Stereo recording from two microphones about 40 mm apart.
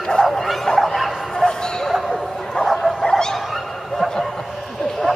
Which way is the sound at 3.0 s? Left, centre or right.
Centre.